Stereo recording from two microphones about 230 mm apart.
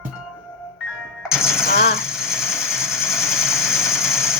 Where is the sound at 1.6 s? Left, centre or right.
Left.